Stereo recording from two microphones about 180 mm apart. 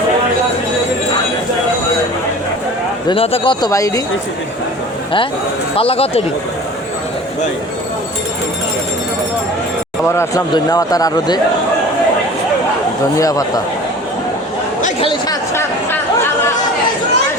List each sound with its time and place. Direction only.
3.1 s speech: 30° left (ahead or behind)
5.7 s speech: 30° left (ahead or behind)
10.1 s speech: 15° left (ahead or behind)
13.1 s speech: 20° left (ahead or behind)
15.0 s chatter: 25° left (ahead or behind)